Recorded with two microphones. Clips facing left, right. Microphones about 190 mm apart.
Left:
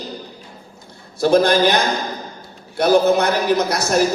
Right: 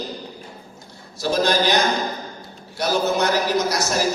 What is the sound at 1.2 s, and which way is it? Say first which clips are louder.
A man's voice: left 6 dB; 55° left (ahead or behind).